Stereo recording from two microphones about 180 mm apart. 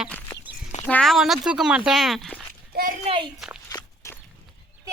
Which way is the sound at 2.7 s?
55° right (ahead or behind).